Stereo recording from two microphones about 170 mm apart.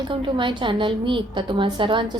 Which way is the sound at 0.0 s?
30° right (ahead or behind).